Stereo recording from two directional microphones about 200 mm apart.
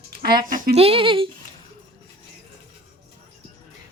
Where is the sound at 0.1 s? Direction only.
50° right (ahead or behind).